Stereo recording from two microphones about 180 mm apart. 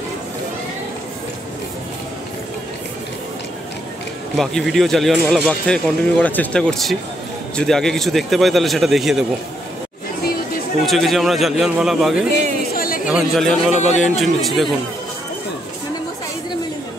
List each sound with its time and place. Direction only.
4.4 s speech: centre (ahead or behind)
10.9 s speech: centre (ahead or behind)
12.7 s chatter: 55° left (ahead or behind)
13.0 s speech: 5° right (ahead or behind)
13.7 s a man's voice: 40° left (ahead or behind)
14.2 s speech: centre (ahead or behind)